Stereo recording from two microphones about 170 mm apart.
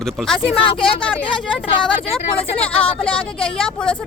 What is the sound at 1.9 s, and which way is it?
Speech, 35° left (ahead or behind).